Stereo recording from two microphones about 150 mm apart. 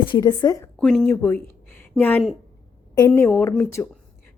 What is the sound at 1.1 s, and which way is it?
Speech, 20° left (ahead or behind).